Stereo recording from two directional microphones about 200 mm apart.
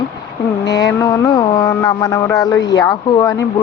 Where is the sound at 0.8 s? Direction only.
20° left (ahead or behind).